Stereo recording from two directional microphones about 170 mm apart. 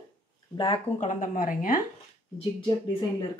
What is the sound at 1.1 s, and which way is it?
Speech, 50° left (ahead or behind).